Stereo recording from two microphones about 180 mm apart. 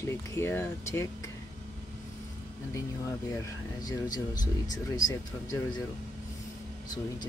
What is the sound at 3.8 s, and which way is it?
Speech, 20° left (ahead or behind).